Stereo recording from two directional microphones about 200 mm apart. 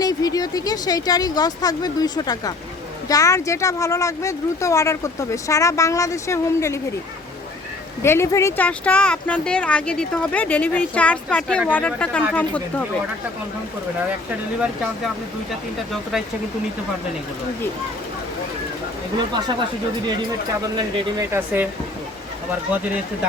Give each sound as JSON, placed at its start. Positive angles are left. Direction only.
{"t": 0.0, "sound": "speech", "side_deg": 20}
{"t": 8.0, "sound": "speech", "side_deg": 15}
{"t": 20.7, "sound": "speech", "side_deg": -25}
{"t": 21.3, "sound": "speech", "side_deg": -10}